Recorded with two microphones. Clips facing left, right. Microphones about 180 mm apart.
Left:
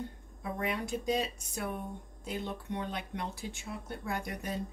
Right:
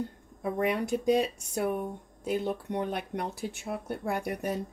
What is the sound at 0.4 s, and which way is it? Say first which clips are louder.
Speech: right 7 dB; 55° right (ahead or behind).